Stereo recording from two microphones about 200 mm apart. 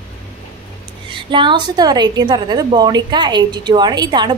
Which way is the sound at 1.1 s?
25° right (ahead or behind).